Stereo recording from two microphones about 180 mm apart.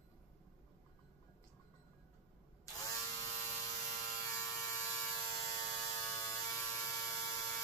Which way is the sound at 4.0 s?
20° left (ahead or behind).